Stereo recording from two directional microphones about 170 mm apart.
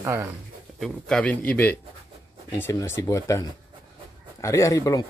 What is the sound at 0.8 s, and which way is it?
Speech, 5° left (ahead or behind).